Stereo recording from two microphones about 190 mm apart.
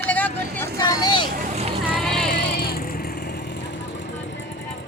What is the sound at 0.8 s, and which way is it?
Vehicle, 20° left (ahead or behind).